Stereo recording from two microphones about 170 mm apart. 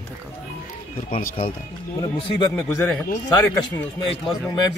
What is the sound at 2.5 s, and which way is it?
Speech, 10° left (ahead or behind).